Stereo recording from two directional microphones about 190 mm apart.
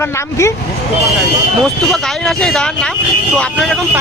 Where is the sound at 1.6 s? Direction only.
Centre (ahead or behind).